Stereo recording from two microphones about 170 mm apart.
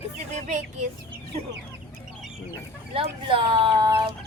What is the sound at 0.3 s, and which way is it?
Speech, 45° right (ahead or behind).